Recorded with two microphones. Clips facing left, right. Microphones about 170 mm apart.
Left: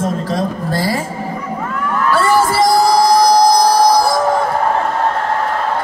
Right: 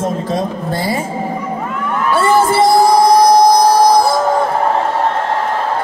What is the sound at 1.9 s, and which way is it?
Music, 20° right (ahead or behind).